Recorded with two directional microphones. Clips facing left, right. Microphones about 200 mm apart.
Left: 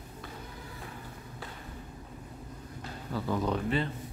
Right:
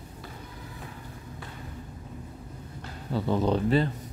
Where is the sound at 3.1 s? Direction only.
25° right (ahead or behind).